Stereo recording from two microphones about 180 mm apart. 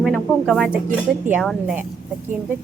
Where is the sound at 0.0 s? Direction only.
Centre (ahead or behind).